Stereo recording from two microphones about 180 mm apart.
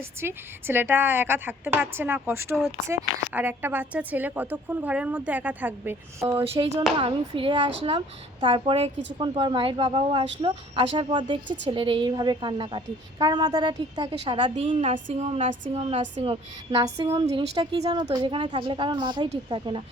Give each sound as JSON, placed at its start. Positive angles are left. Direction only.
{"t": 0.2, "sound": "a woman's voice", "side_deg": -10}
{"t": 6.5, "sound": "a woman's voice", "side_deg": -25}
{"t": 14.5, "sound": "a sound", "side_deg": -30}
{"t": 16.3, "sound": "a woman's voice", "side_deg": -25}